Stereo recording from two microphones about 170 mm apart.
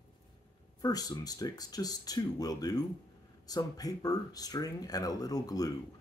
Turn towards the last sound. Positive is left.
turn(degrees=20)  # may be behind; listen again after turning